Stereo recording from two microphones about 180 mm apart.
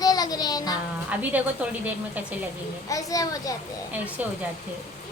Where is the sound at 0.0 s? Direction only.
20° left (ahead or behind).